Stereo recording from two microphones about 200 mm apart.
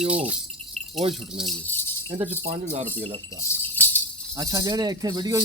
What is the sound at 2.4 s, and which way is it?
Speech, 35° right (ahead or behind).